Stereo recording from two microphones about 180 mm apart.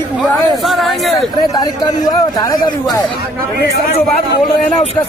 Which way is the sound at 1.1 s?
20° left (ahead or behind).